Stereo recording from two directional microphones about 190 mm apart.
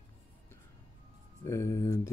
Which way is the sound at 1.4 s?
15° left (ahead or behind).